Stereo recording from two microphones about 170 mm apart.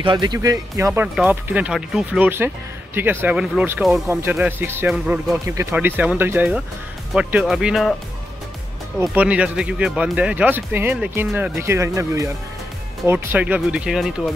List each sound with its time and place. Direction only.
0.0 s speech: 25° right (ahead or behind)
1.0 s speech: 5° right (ahead or behind)
9.0 s speech: 10° right (ahead or behind)